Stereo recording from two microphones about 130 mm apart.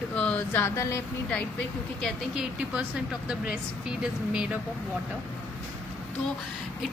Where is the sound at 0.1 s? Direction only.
10° left (ahead or behind).